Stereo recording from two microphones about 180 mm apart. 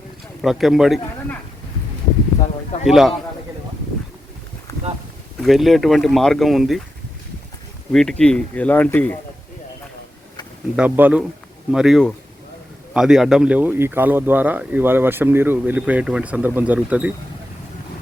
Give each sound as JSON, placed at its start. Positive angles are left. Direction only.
{"t": 0.4, "sound": "speech", "side_deg": 0}
{"t": 2.8, "sound": "speech", "side_deg": 0}
{"t": 5.4, "sound": "speech", "side_deg": 0}
{"t": 7.9, "sound": "speech", "side_deg": 5}
{"t": 10.8, "sound": "speech", "side_deg": -10}